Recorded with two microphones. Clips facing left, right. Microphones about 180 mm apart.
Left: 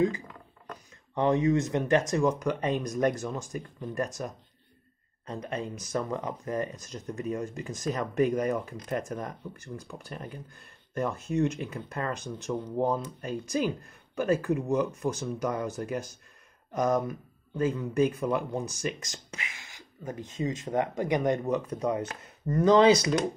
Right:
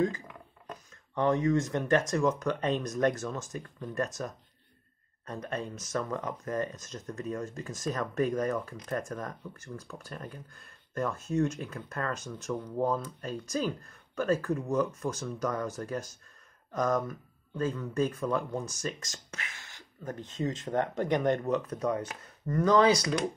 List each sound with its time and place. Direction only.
1.1 s speech: 15° left (ahead or behind)
5.2 s speech: 15° left (ahead or behind)